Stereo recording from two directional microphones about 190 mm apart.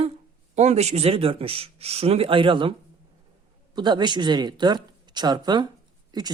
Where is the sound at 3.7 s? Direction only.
25° right (ahead or behind).